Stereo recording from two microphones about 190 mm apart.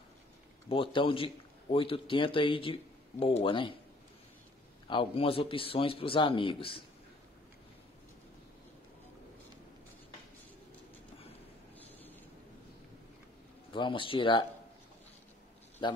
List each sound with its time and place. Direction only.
0.7 s a man's voice: 30° left (ahead or behind)
4.8 s a man's voice: 25° left (ahead or behind)
13.7 s speech: 25° left (ahead or behind)